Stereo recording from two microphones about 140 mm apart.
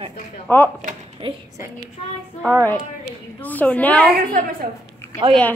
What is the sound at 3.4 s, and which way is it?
Speech, 10° left (ahead or behind).